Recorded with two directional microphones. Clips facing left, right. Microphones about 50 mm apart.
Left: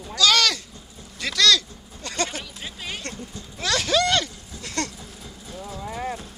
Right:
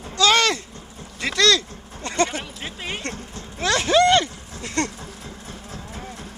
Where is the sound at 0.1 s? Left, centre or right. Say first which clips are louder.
Right 2 dB; right.